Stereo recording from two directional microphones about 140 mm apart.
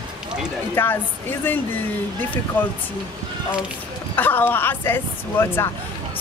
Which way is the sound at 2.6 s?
10° left (ahead or behind).